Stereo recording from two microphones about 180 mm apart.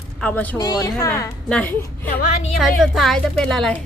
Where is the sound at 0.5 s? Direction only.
20° left (ahead or behind).